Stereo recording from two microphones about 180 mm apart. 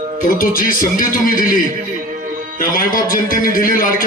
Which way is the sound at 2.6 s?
50° left (ahead or behind).